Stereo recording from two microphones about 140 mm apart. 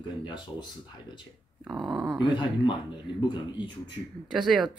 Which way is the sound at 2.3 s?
35° left (ahead or behind).